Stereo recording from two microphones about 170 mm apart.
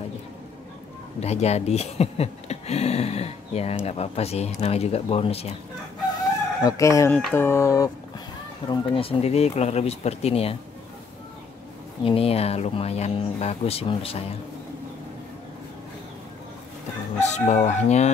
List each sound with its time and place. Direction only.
1.2 s speech: 40° left (ahead or behind)
6.6 s chicken: 20° left (ahead or behind)
8.6 s speech: 30° left (ahead or behind)
12.0 s speech: 35° left (ahead or behind)
17.2 s speech: 40° left (ahead or behind)